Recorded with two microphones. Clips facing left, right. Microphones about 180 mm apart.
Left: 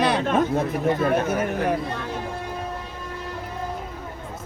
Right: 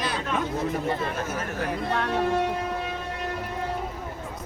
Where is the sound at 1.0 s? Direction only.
60° left (ahead or behind).